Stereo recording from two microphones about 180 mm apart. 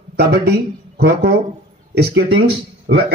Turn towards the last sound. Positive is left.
turn(degrees=-90)